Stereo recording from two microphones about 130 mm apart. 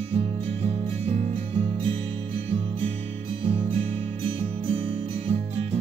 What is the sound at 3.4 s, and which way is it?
Music, 45° right (ahead or behind).